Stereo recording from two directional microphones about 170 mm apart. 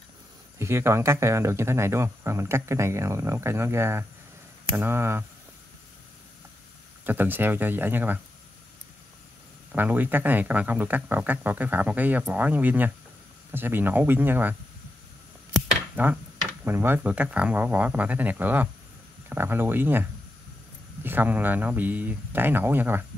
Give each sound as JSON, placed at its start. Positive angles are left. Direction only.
{"t": 0.6, "sound": "speech", "side_deg": -15}
{"t": 7.1, "sound": "speech", "side_deg": -10}
{"t": 9.7, "sound": "speech", "side_deg": -10}
{"t": 15.5, "sound": "a sound", "side_deg": -10}
{"t": 16.6, "sound": "speech", "side_deg": -15}